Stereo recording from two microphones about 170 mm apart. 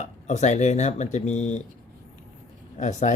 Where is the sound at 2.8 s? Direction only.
45° left (ahead or behind).